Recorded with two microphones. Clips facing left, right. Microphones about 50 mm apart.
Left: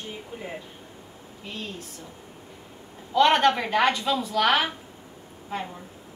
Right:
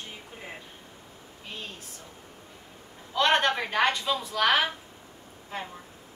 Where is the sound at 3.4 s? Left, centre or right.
Centre.